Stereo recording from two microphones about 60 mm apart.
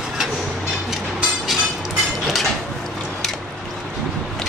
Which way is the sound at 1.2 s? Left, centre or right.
Centre.